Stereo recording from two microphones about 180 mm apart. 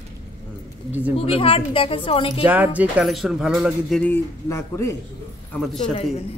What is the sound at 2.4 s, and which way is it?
Speech, 10° right (ahead or behind).